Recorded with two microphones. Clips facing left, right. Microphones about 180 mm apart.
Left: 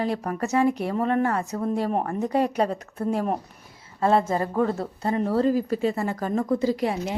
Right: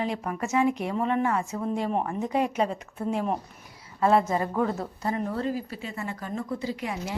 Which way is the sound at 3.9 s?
35° left (ahead or behind).